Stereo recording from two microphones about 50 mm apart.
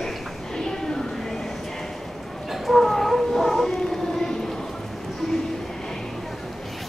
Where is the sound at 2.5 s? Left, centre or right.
Centre.